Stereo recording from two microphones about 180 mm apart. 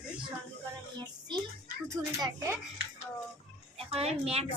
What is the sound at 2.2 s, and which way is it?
Speech, 15° right (ahead or behind).